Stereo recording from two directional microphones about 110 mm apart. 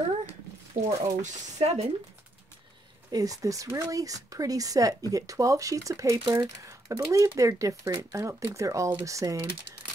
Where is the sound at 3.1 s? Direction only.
30° right (ahead or behind).